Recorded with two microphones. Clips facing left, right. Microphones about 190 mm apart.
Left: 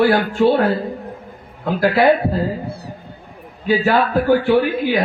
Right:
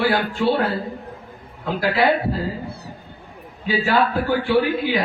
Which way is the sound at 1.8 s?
50° left (ahead or behind).